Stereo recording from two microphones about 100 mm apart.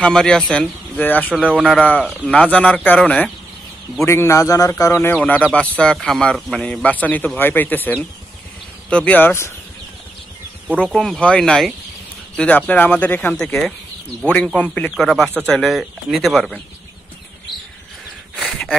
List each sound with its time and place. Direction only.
0.0 s a man's voice: 5° left (ahead or behind)
4.0 s a man's voice: 25° left (ahead or behind)
5.1 s a man's voice: 15° left (ahead or behind)
11.0 s a man's voice: 10° left (ahead or behind)
13.4 s a man's voice: 5° left (ahead or behind)
15.0 s speech: 5° left (ahead or behind)
17.5 s a sound: centre (ahead or behind)